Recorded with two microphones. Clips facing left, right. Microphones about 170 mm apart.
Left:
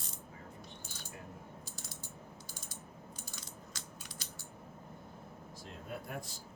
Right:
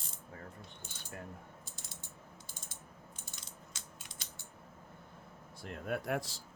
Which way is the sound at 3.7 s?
20° right (ahead or behind).